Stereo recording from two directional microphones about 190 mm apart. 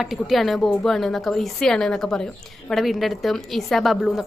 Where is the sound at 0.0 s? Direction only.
Centre (ahead or behind).